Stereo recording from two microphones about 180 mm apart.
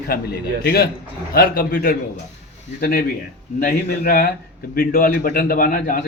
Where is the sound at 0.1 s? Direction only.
60° left (ahead or behind).